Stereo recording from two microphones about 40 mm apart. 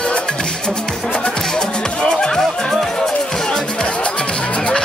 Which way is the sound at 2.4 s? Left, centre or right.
Centre.